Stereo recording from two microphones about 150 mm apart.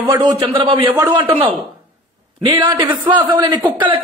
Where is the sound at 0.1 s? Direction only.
30° right (ahead or behind).